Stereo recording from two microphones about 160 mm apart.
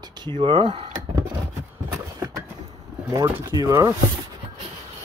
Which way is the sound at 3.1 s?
25° right (ahead or behind).